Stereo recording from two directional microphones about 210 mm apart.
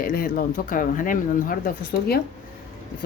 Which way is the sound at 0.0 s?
45° left (ahead or behind).